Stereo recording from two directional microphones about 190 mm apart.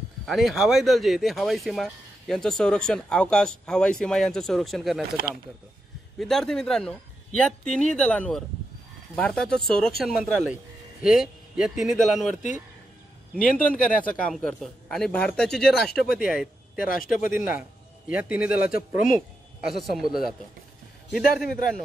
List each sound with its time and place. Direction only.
0.3 s speech: centre (ahead or behind)
6.1 s a man's voice: centre (ahead or behind)
13.4 s speech: 45° left (ahead or behind)
13.7 s speech: 5° left (ahead or behind)
16.7 s speech: 45° left (ahead or behind)
17.5 s speech: 5° right (ahead or behind)
18.7 s speech: 45° left (ahead or behind)
19.6 s speech: centre (ahead or behind)